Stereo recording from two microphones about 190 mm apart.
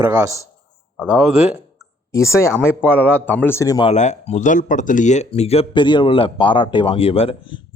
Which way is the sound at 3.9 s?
35° left (ahead or behind).